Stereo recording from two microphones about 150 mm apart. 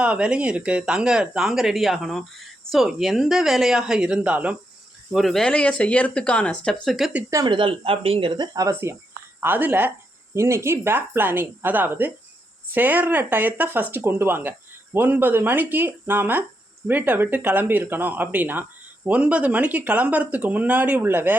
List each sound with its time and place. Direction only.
0.0 s speech: 5° right (ahead or behind)
7.3 s speech: 30° right (ahead or behind)
8.5 s speech: 20° right (ahead or behind)